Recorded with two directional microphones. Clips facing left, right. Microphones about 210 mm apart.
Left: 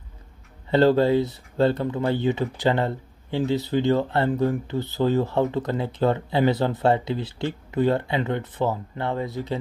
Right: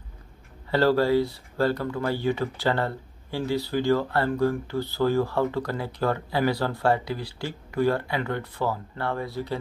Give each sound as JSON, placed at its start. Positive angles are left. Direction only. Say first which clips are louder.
{"t": 0.7, "sound": "speech", "louder": "left 3 dB", "side_deg": 20}